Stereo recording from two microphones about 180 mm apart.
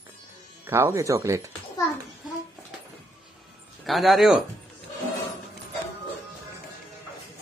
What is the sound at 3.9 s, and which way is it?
Speech, centre (ahead or behind).